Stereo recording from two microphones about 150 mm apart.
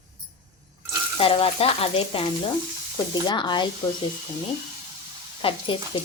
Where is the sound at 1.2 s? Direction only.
40° left (ahead or behind).